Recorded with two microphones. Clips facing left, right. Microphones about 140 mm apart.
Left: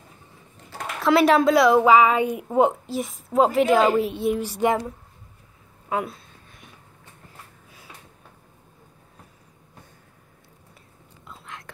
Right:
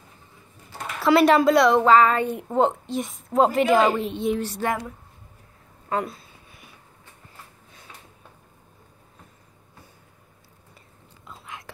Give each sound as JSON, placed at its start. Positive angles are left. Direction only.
{"t": 1.0, "sound": "a woman's voice", "side_deg": 0}
{"t": 5.9, "sound": "a sound", "side_deg": 5}
{"t": 11.2, "sound": "whispering", "side_deg": -5}